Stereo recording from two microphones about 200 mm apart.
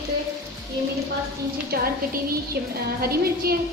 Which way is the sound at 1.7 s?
50° right (ahead or behind).